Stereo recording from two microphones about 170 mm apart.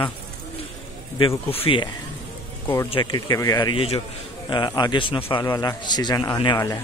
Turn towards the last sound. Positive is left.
turn(degrees=25)  # may be behind; listen again after turning